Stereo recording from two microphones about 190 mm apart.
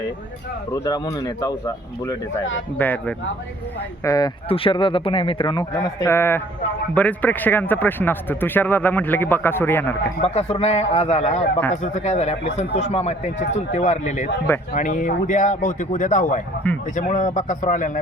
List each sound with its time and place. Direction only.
0.7 s speech: 20° left (ahead or behind)
2.7 s speech: 10° left (ahead or behind)
4.4 s speech: 30° left (ahead or behind)
5.7 s speech: 15° left (ahead or behind)
10.2 s speech: 35° left (ahead or behind)